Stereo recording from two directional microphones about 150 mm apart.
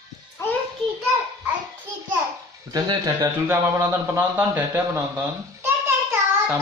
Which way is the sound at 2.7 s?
20° right (ahead or behind).